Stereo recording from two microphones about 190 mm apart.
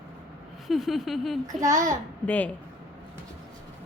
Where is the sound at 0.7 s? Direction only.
Centre (ahead or behind).